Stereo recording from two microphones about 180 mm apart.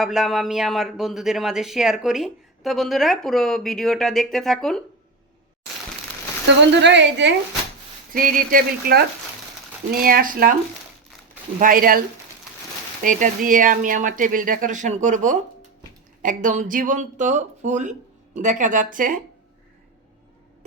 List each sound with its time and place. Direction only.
0.0 s speech: centre (ahead or behind)
6.7 s a woman's voice: 75° right (ahead or behind)
8.1 s speech: 50° right (ahead or behind)
11.6 s speech: 55° right (ahead or behind)